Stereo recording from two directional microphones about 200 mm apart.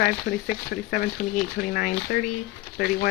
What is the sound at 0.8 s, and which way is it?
Speech, 50° left (ahead or behind).